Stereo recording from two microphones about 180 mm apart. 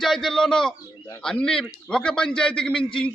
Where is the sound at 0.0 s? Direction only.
Centre (ahead or behind).